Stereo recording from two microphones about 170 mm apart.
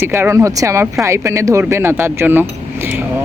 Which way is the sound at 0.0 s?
15° right (ahead or behind).